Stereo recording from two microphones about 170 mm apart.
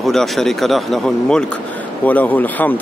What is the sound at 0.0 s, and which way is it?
Speech, centre (ahead or behind).